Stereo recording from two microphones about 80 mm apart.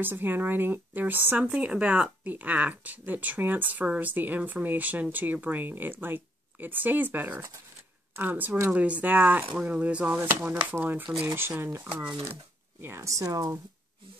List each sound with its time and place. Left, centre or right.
0.0 s speech: right
12.8 s speech: right